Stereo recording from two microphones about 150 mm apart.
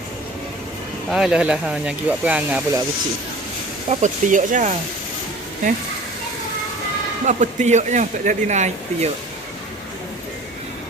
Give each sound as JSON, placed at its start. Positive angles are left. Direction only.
{"t": 1.1, "sound": "speech", "side_deg": -5}
{"t": 3.8, "sound": "speech", "side_deg": -55}
{"t": 7.3, "sound": "speech", "side_deg": -50}